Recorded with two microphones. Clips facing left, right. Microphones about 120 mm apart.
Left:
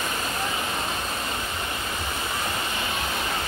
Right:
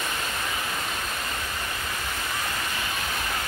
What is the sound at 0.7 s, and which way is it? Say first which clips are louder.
Vehicle: left 2 dB; 30° left (ahead or behind).